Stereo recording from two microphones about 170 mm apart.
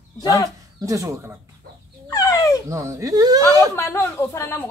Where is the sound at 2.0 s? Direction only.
20° left (ahead or behind).